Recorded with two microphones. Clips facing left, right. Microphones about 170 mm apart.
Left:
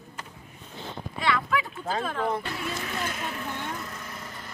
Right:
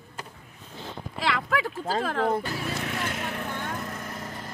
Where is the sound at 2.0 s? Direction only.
90° right.